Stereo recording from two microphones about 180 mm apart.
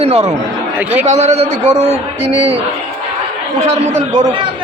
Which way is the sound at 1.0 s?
35° right (ahead or behind).